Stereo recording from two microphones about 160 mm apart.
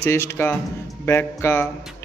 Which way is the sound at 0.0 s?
15° left (ahead or behind).